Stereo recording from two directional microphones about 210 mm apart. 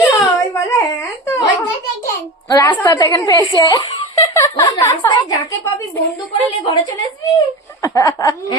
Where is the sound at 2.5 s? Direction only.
15° left (ahead or behind).